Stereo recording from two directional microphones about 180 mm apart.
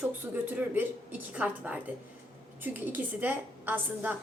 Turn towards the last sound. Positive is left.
turn(degrees=-10)  # may be behind; listen again after turning